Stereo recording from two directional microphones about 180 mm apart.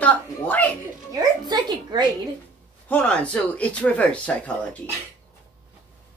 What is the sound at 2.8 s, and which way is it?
Speech, 5° left (ahead or behind).